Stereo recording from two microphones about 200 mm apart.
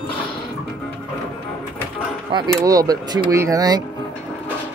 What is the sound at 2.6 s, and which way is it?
Speech, 15° right (ahead or behind).